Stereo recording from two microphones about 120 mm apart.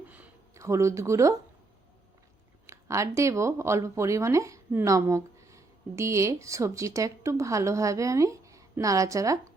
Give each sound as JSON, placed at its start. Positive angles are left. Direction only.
{"t": 0.5, "sound": "speech", "side_deg": -25}
{"t": 2.6, "sound": "speech", "side_deg": -25}